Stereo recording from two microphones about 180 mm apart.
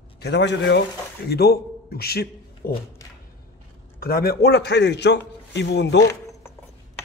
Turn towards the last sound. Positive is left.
turn(degrees=70)  # may be behind; listen again after turning